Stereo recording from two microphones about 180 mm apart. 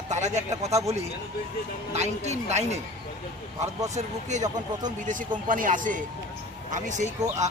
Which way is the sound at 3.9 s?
40° right (ahead or behind).